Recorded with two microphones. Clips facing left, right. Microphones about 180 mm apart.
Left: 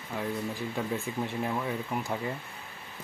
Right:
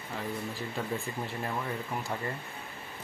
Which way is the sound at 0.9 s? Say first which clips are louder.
Left 3 dB; centre (ahead or behind).